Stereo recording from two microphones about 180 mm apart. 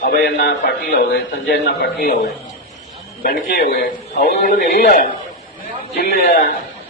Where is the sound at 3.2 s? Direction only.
55° left (ahead or behind).